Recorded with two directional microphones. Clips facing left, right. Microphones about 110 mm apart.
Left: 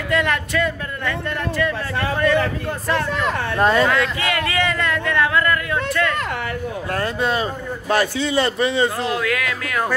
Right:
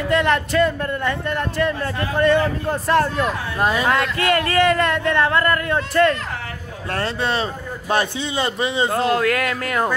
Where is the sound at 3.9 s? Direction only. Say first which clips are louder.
Right 2 dB; 45° right (ahead or behind).